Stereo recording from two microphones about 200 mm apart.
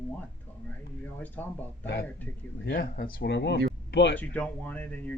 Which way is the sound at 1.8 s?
60° left (ahead or behind).